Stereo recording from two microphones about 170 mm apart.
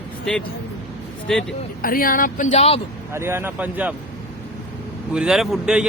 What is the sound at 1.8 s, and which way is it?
Speech, 60° left (ahead or behind).